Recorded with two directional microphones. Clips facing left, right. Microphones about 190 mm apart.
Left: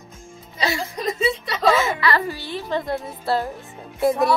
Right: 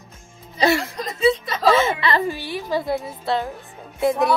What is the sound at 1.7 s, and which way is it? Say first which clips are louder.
Speech: right 2 dB; 25° right (ahead or behind).